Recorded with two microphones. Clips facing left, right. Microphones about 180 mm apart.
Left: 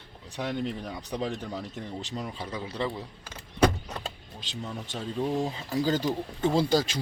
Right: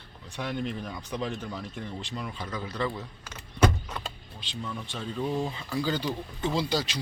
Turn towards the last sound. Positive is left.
turn(degrees=50)  # may be behind; listen again after turning